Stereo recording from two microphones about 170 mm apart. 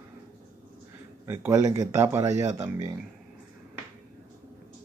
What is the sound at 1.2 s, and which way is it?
Speech, 15° right (ahead or behind).